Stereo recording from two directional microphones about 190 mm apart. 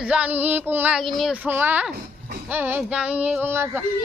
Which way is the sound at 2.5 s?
10° right (ahead or behind).